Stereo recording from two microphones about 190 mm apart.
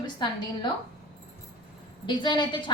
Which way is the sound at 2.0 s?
25° left (ahead or behind).